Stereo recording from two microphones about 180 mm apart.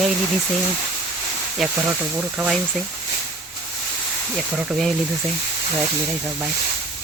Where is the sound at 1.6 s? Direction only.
Centre (ahead or behind).